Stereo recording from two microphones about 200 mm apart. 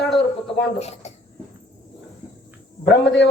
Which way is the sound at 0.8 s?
30° left (ahead or behind).